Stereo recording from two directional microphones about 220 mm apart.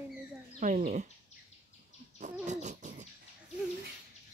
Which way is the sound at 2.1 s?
35° right (ahead or behind).